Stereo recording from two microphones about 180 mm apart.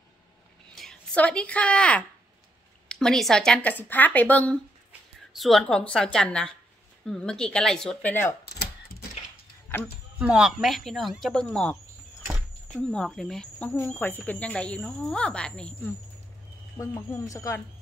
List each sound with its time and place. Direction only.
0.7 s speech: 5° left (ahead or behind)
10.1 s speech: 5° right (ahead or behind)
16.7 s speech: 20° left (ahead or behind)